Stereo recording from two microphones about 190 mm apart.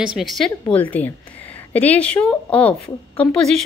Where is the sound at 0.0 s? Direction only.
Centre (ahead or behind).